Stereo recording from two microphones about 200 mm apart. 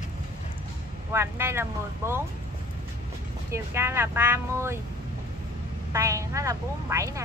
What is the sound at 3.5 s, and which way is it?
A woman's voice, 10° right (ahead or behind).